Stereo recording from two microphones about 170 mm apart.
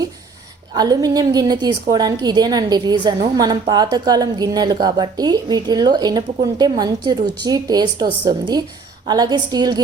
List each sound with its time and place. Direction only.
0.7 s a woman's voice: 25° right (ahead or behind)